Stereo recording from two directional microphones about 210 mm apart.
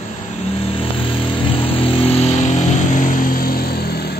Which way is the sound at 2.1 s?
35° left (ahead or behind).